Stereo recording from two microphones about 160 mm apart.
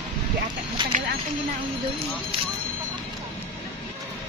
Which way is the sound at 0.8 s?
30° right (ahead or behind).